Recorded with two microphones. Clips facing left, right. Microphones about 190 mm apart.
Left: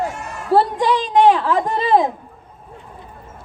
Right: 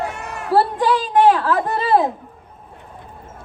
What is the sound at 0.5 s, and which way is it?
Speech, 10° right (ahead or behind).